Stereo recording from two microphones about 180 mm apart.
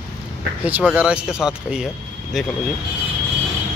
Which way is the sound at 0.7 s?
10° right (ahead or behind).